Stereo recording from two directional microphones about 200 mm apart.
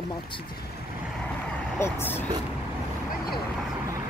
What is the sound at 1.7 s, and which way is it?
Speech, 15° left (ahead or behind).